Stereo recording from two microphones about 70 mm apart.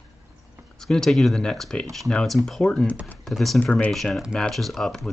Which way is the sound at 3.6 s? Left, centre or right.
Left.